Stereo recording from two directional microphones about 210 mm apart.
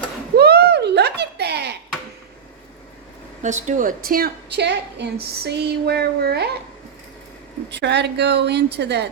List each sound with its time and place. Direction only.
0.3 s a sound: 50° right (ahead or behind)
3.4 s a woman's voice: 35° right (ahead or behind); by 6.5 s 50° right (ahead or behind)
7.7 s a woman's voice: 55° right (ahead or behind)